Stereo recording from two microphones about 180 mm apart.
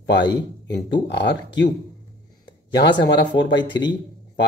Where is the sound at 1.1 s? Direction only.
70° left (ahead or behind).